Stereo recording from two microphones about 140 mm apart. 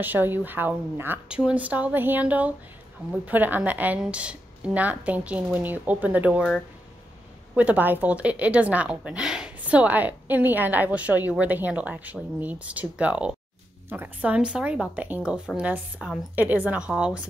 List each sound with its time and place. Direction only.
0.0 s a woman's voice: 15° right (ahead or behind)
7.5 s a woman's voice: 10° right (ahead or behind)